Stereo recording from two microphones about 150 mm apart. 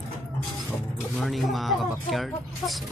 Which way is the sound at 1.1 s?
Centre (ahead or behind).